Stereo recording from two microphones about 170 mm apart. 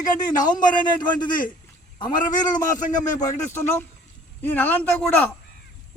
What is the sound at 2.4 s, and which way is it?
A man's voice, 20° left (ahead or behind).